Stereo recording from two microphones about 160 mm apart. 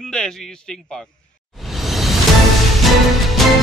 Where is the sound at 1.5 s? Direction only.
Centre (ahead or behind).